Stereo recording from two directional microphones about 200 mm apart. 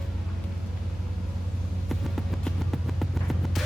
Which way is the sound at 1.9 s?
Centre (ahead or behind).